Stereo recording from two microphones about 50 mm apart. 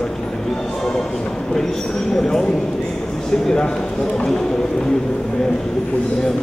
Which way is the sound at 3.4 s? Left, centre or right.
Centre.